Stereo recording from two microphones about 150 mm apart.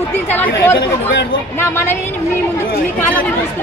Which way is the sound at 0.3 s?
10° left (ahead or behind).